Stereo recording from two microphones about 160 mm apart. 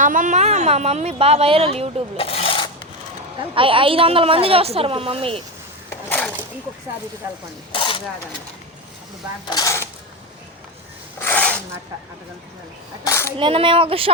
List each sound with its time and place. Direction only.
0.0 s speech: 55° right (ahead or behind); by 1.9 s 35° right (ahead or behind)
2.1 s filing: 35° left (ahead or behind)
3.5 s speech: 35° right (ahead or behind)
5.9 s a sound: 10° left (ahead or behind)
7.7 s coin: 30° left (ahead or behind)
9.5 s speech: 20° left (ahead or behind)
11.2 s a sound: 10° left (ahead or behind)
13.1 s speech: 15° left (ahead or behind)
13.4 s speech: 35° right (ahead or behind)